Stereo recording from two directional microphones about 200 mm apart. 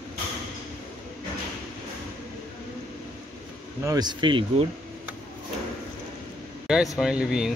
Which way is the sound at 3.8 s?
20° right (ahead or behind).